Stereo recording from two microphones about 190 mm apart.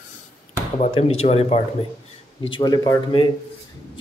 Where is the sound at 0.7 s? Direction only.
30° left (ahead or behind).